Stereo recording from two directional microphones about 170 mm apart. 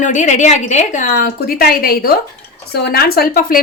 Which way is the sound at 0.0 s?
45° left (ahead or behind).